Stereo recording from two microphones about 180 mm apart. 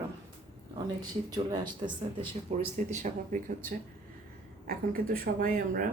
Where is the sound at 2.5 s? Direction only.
40° right (ahead or behind).